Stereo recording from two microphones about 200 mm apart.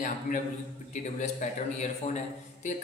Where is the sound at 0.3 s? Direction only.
40° left (ahead or behind).